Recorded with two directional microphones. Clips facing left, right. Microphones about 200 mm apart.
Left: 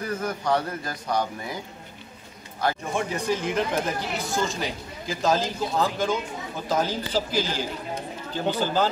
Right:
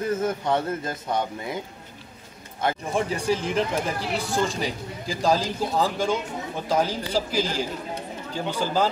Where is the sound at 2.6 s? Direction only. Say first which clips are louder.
Right 1 dB; 25° right (ahead or behind).